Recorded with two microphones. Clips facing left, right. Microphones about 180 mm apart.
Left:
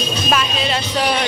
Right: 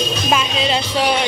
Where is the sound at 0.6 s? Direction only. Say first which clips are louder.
Right 2 dB; 20° right (ahead or behind).